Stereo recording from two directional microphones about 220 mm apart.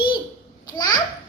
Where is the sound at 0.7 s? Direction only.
20° left (ahead or behind).